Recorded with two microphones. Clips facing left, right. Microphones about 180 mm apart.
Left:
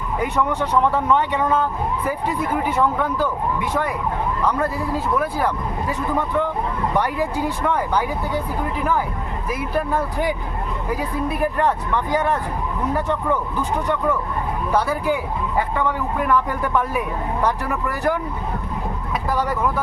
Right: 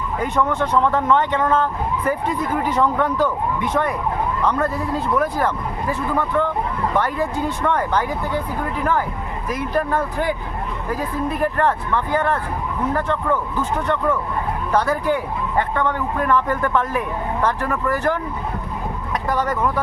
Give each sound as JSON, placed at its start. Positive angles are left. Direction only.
{"t": 0.2, "sound": "speech", "side_deg": 10}
{"t": 9.5, "sound": "speech", "side_deg": 10}
{"t": 19.3, "sound": "speech", "side_deg": 10}